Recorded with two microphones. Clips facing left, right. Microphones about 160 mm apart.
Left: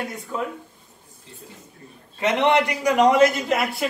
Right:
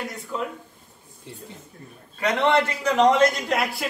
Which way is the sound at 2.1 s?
20° left (ahead or behind).